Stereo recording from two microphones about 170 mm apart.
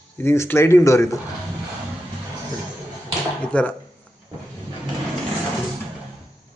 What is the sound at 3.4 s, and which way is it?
Speech, 5° left (ahead or behind).